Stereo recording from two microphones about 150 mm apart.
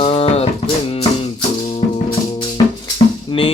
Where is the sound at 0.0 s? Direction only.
40° left (ahead or behind).